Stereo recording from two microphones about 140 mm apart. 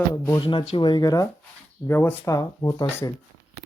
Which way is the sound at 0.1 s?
20° left (ahead or behind).